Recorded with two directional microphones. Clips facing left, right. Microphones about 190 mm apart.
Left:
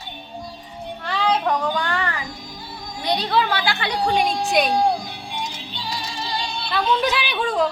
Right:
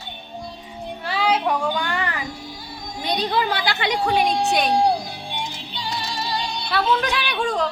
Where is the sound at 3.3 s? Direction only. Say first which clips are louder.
Left 1 dB; 15° right (ahead or behind).